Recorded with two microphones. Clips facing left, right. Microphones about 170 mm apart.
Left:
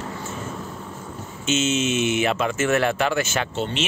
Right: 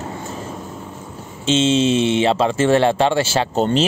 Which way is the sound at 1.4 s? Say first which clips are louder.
Right 6 dB; 30° right (ahead or behind).